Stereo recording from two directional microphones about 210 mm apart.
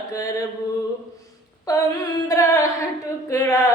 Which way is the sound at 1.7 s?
15° left (ahead or behind).